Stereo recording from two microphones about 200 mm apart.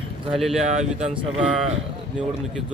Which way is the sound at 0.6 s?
35° right (ahead or behind).